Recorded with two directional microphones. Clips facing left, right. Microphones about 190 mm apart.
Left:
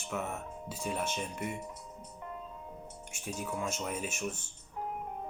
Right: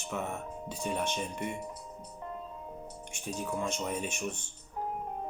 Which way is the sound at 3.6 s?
5° left (ahead or behind).